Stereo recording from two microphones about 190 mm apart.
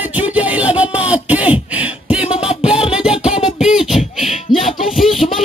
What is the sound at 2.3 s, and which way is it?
Music, 30° left (ahead or behind).